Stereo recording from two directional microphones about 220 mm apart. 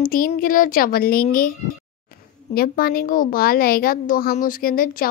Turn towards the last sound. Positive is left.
turn(degrees=40)  # may be behind; listen again after turning